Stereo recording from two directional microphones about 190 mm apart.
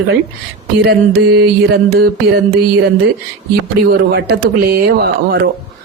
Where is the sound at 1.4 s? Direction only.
60° right (ahead or behind).